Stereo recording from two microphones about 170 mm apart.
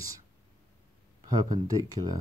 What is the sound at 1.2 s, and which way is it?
Speech, 20° right (ahead or behind).